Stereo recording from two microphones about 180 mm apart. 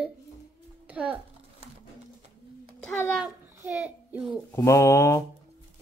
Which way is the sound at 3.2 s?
10° right (ahead or behind).